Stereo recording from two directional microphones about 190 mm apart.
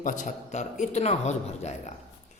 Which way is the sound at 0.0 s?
45° left (ahead or behind).